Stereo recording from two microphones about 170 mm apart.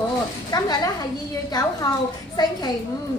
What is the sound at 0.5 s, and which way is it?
Speech, 25° left (ahead or behind).